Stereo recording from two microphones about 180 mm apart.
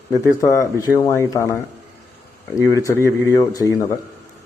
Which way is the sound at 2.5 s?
15° left (ahead or behind).